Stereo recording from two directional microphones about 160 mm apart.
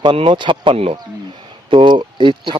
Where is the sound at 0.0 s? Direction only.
35° right (ahead or behind).